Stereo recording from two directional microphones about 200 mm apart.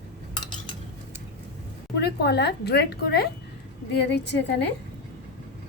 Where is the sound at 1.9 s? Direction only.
55° left (ahead or behind).